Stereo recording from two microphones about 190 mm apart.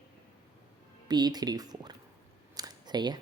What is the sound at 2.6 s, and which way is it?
Camera, 20° right (ahead or behind).